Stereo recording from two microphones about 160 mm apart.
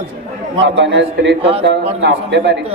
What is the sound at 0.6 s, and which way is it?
A man's voice, 90° right.